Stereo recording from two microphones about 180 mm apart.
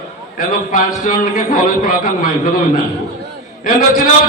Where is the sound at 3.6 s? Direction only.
50° left (ahead or behind).